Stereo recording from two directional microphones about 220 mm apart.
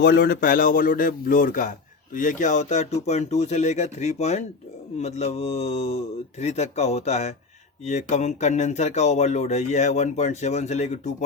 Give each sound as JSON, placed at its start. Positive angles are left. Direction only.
{"t": 0.0, "sound": "speech", "side_deg": 50}
{"t": 4.9, "sound": "mantra", "side_deg": 30}
{"t": 7.9, "sound": "speech", "side_deg": 30}